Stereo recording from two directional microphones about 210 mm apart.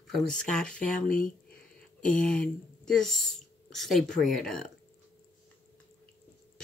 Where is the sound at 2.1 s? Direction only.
5° left (ahead or behind).